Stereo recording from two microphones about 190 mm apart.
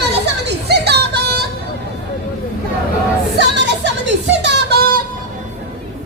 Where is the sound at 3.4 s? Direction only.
65° right (ahead or behind).